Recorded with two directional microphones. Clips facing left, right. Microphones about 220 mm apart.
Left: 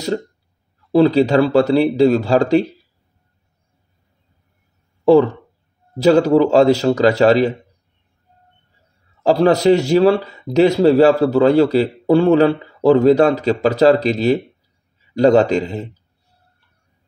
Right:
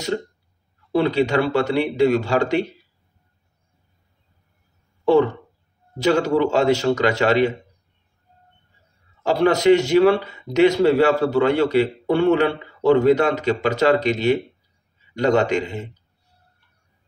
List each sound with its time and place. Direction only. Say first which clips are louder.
0.9 s speech: left 6 dB; 35° left (ahead or behind)
5.0 s speech: left 5 dB; 35° left (ahead or behind)
9.2 s speech: left 4 dB; 35° left (ahead or behind)